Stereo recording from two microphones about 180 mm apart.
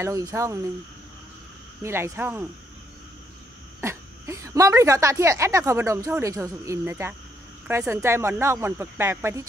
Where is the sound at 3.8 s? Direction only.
15° right (ahead or behind).